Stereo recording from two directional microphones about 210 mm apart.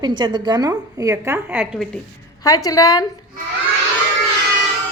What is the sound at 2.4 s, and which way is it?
Speech, 15° left (ahead or behind).